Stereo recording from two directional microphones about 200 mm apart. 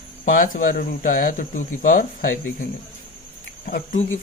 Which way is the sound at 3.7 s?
40° left (ahead or behind).